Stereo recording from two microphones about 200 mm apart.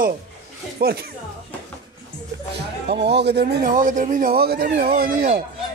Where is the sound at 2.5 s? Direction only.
55° right (ahead or behind).